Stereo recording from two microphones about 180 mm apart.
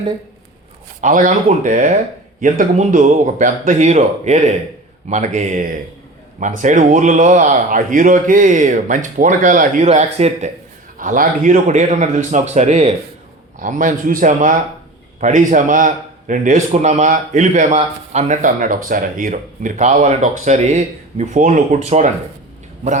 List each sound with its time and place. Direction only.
1.0 s a man's voice: 45° right (ahead or behind)
10.9 s a man's voice: 50° right (ahead or behind)